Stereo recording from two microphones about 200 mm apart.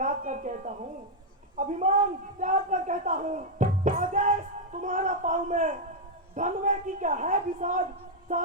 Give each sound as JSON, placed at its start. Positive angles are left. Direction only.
{"t": 0.0, "sound": "speech", "side_deg": -40}